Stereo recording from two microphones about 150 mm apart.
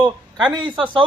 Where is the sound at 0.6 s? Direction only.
35° right (ahead or behind).